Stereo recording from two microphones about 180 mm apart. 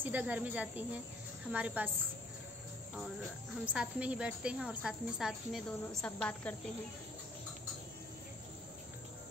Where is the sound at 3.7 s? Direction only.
5° right (ahead or behind).